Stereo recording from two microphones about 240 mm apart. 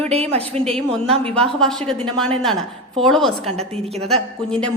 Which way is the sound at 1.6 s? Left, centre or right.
Centre.